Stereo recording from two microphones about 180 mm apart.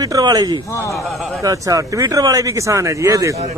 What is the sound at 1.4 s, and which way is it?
Speech, 20° right (ahead or behind).